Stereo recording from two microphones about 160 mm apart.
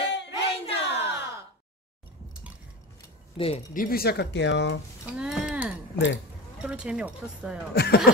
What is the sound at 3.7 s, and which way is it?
Speech, 65° left (ahead or behind).